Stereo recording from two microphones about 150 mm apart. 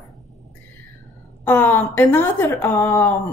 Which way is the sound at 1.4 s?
15° left (ahead or behind).